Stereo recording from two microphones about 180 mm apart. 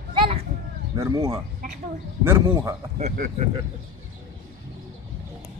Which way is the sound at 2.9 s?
45° right (ahead or behind).